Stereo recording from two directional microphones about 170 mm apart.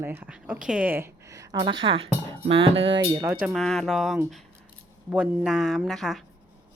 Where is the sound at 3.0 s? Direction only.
15° right (ahead or behind).